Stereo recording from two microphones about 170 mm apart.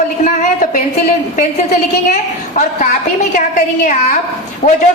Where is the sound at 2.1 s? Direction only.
45° left (ahead or behind).